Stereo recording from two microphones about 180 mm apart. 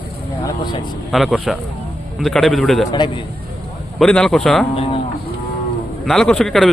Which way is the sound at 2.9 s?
25° left (ahead or behind).